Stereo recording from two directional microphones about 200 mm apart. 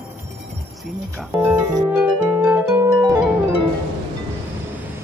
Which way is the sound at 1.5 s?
10° right (ahead or behind).